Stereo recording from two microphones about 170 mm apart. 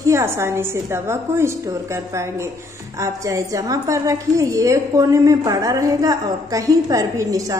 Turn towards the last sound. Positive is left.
turn(degrees=-20)  # may be behind; listen again after turning